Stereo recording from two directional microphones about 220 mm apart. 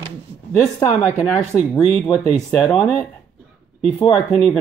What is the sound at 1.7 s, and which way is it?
Speech, 5° left (ahead or behind).